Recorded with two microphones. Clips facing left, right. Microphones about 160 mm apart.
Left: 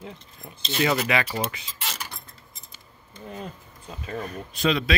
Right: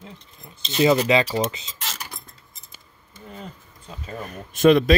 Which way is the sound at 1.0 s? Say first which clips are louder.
Right 6 dB; 25° right (ahead or behind).